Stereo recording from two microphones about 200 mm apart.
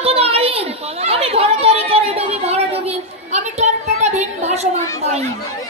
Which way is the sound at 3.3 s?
35° right (ahead or behind).